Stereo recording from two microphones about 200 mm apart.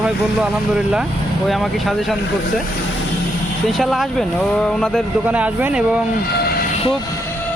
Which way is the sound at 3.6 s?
Centre (ahead or behind).